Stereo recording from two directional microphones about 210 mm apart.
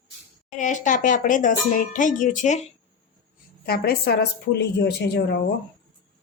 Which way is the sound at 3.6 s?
45° left (ahead or behind).